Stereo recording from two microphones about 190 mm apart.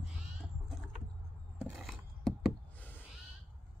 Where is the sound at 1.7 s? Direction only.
Centre (ahead or behind).